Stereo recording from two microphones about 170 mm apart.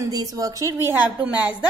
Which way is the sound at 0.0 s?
20° right (ahead or behind).